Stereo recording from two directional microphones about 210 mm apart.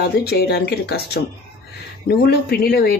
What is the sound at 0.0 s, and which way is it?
Speech, 50° left (ahead or behind).